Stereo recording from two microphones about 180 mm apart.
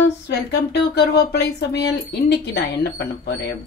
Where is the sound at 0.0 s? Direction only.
65° left (ahead or behind).